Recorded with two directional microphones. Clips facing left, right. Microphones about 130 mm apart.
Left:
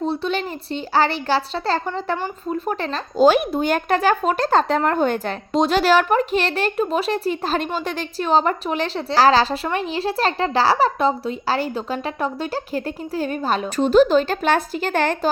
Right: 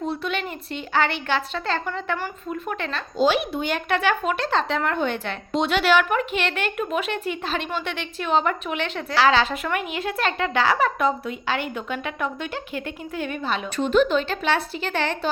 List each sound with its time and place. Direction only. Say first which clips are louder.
0.0 s speech: left 4 dB; 30° left (ahead or behind); by 15.3 s 45° left (ahead or behind)